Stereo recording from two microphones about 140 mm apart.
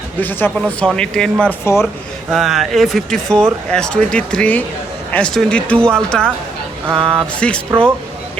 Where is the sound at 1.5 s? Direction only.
20° left (ahead or behind).